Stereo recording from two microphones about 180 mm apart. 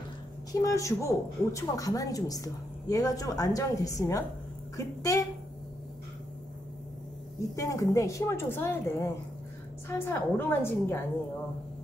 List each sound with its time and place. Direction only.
0.5 s a woman's voice: 20° left (ahead or behind)
7.5 s a woman's voice: 20° left (ahead or behind)